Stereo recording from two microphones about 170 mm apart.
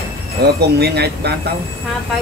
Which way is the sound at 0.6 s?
75° right (ahead or behind).